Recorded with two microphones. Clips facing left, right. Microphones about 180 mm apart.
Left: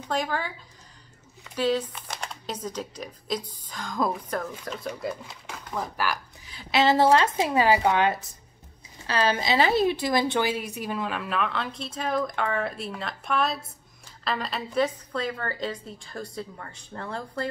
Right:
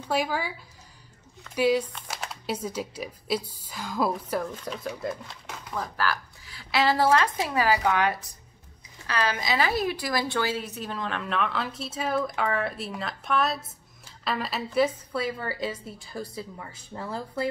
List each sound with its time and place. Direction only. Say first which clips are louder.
0.1 s a woman's voice: right 1 dB; 10° right (ahead or behind)
5.2 s a sound: even; 5° left (ahead or behind)
5.8 s a woman's voice: even; 15° left (ahead or behind); by 17.5 s 5° right (ahead or behind)